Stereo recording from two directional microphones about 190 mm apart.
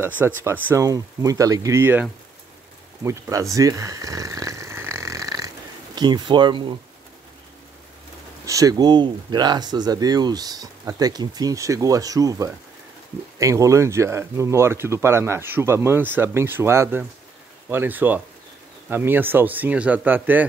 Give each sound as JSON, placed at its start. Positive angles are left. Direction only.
{"t": 0.4, "sound": "speech", "side_deg": -15}
{"t": 3.5, "sound": "a sound", "side_deg": -15}
{"t": 5.9, "sound": "speech", "side_deg": -20}
{"t": 8.5, "sound": "speech", "side_deg": -20}